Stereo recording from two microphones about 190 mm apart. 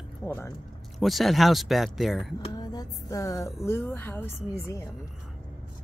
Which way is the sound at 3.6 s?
10° left (ahead or behind).